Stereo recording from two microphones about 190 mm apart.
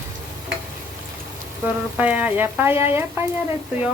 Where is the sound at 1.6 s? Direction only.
10° right (ahead or behind).